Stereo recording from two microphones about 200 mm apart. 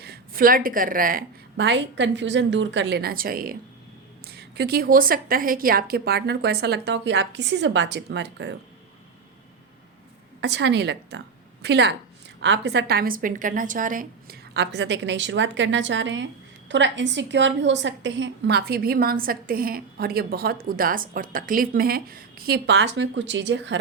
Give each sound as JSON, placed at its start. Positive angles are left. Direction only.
{"t": 0.0, "sound": "a woman's voice", "side_deg": -50}
{"t": 10.4, "sound": "a woman's voice", "side_deg": -60}